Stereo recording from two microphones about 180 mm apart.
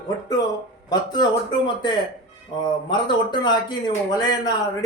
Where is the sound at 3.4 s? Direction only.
25° left (ahead or behind).